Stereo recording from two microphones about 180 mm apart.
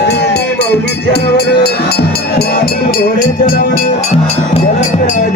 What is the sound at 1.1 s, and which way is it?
Speech, 65° left (ahead or behind).